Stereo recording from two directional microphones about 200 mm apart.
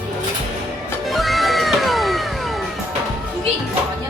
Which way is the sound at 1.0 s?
Centre (ahead or behind).